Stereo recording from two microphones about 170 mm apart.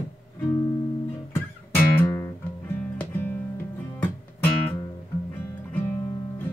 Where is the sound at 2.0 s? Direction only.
20° left (ahead or behind).